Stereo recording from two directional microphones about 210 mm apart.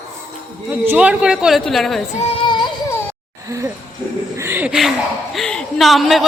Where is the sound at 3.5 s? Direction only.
15° right (ahead or behind).